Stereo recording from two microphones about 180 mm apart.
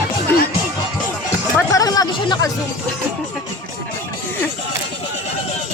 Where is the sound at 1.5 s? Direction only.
20° left (ahead or behind).